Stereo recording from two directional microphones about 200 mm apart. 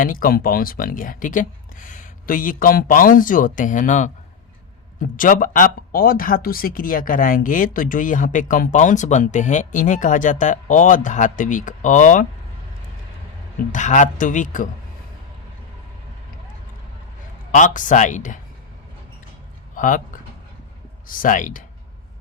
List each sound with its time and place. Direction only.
0.0 s speech: 45° left (ahead or behind)
5.1 s speech: 40° left (ahead or behind)
13.7 s speech: 40° left (ahead or behind)
17.5 s speech: 40° left (ahead or behind)
19.7 s speech: 40° left (ahead or behind)